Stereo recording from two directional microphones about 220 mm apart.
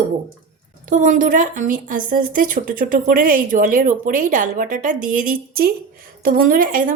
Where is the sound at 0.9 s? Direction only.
35° right (ahead or behind).